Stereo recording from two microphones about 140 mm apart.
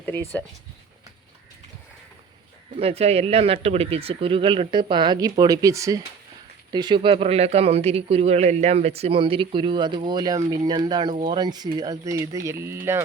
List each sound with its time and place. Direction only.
0.0 s speech: 15° left (ahead or behind)
2.7 s speech: 45° right (ahead or behind); by 13.0 s 15° right (ahead or behind)